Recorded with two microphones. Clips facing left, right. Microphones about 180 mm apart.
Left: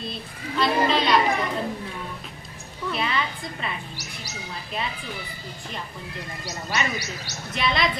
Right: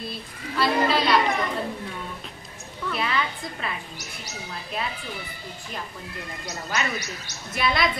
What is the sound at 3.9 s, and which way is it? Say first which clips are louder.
Speech: left 1 dB; 35° left (ahead or behind).